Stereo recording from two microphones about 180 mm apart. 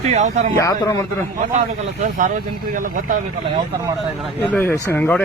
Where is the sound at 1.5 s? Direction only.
45° right (ahead or behind).